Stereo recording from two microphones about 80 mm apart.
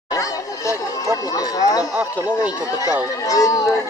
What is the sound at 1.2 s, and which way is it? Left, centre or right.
Speech, left.